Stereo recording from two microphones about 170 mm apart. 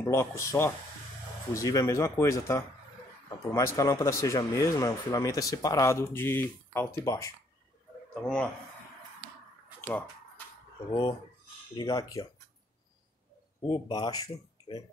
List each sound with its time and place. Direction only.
0.0 s speech: 15° left (ahead or behind)
8.1 s speech: 5° left (ahead or behind)
9.8 s a sound: 15° left (ahead or behind)
10.9 s speech: 25° left (ahead or behind)
13.6 s speech: 25° left (ahead or behind)